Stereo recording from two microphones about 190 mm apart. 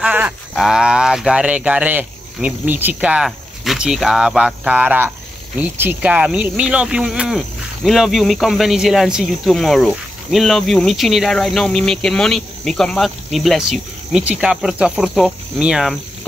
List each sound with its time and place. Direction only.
0.0 s speech: 5° right (ahead or behind)